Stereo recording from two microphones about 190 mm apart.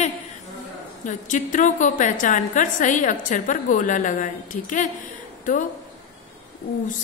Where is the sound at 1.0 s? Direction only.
40° left (ahead or behind).